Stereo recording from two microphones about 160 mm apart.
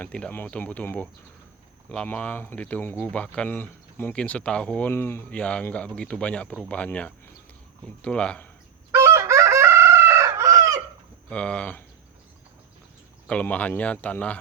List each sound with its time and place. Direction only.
0.0 s speech: 10° left (ahead or behind)
9.0 s chicken: 15° right (ahead or behind)
11.3 s speech: 5° left (ahead or behind)
13.2 s speech: 10° left (ahead or behind)